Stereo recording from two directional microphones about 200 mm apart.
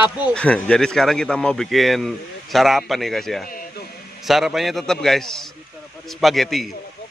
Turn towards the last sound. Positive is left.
turn(degrees=0)  # may be behind; listen again after turning